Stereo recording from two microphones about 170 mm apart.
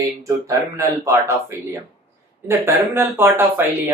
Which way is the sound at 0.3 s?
20° right (ahead or behind).